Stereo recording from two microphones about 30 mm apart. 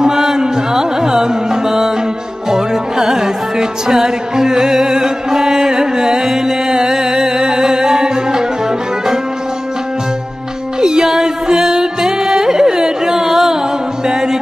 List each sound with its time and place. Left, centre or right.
0.0 s music: centre
10.8 s music: right